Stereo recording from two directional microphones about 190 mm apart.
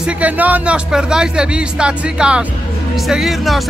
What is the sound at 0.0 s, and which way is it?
Speech, 10° right (ahead or behind).